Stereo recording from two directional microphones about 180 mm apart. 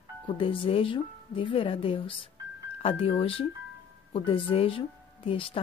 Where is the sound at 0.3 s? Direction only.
30° left (ahead or behind).